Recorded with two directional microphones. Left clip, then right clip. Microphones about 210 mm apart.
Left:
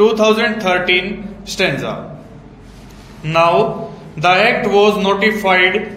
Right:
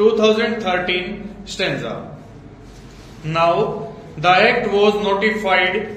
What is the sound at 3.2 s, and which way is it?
A man's voice, 30° left (ahead or behind).